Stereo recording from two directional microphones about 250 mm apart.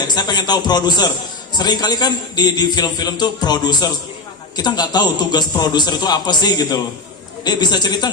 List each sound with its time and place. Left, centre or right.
0.1 s a man's voice: centre